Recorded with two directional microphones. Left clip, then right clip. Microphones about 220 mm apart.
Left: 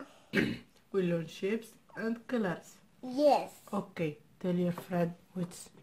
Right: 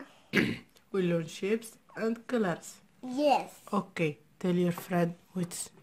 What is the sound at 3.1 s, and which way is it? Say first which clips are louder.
Speech: even; 25° right (ahead or behind).